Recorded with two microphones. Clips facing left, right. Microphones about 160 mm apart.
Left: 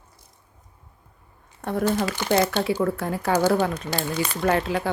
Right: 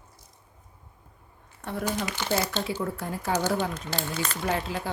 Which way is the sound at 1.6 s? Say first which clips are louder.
Left 7 dB; 50° left (ahead or behind).